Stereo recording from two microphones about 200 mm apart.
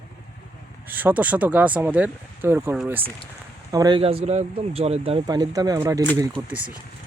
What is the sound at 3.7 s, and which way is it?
Speech, 20° right (ahead or behind).